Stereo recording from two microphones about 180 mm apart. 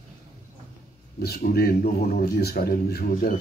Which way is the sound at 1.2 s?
60° left (ahead or behind).